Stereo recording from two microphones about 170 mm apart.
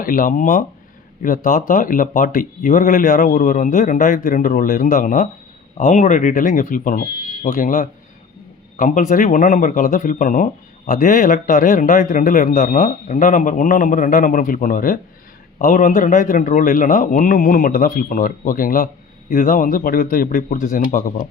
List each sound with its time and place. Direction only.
0.0 s speech: 55° left (ahead or behind)